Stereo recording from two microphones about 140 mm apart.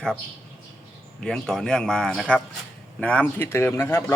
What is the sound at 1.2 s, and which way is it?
A man's voice, 5° left (ahead or behind).